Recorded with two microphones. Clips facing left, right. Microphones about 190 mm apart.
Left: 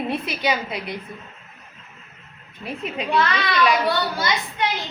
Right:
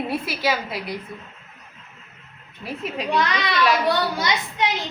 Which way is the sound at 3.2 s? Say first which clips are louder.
Left 2 dB; 15° right (ahead or behind).